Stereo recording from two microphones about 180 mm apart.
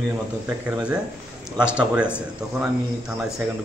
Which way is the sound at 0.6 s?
5° right (ahead or behind).